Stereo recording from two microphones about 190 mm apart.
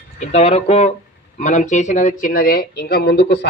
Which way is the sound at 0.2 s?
35° left (ahead or behind).